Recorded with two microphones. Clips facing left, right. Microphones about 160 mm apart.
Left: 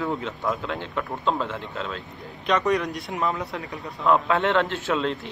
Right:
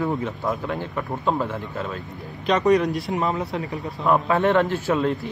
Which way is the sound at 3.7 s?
20° right (ahead or behind).